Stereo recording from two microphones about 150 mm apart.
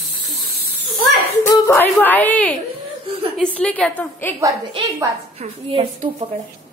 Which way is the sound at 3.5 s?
10° left (ahead or behind).